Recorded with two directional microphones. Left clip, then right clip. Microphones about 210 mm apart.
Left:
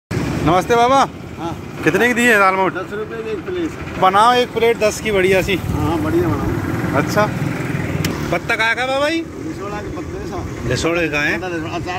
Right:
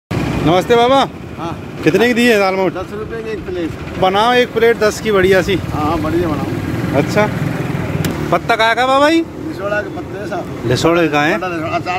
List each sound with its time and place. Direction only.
0.5 s speech: 20° right (ahead or behind); by 2.7 s 35° right (ahead or behind)
4.0 s speech: 25° right (ahead or behind)
7.2 s speech: 30° right (ahead or behind)
10.7 s speech: 30° right (ahead or behind)